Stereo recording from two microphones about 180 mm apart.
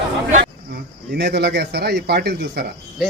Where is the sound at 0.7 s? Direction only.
65° right (ahead or behind).